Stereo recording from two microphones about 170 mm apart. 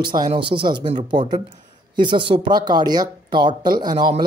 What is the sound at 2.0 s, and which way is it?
Speech, 30° right (ahead or behind).